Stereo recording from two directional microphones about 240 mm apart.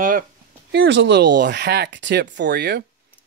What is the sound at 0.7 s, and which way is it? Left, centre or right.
Speech, right.